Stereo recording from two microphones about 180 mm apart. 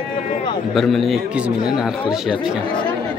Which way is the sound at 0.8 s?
Centre (ahead or behind).